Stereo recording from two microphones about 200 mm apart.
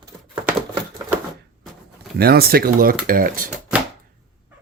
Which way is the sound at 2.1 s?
50° right (ahead or behind).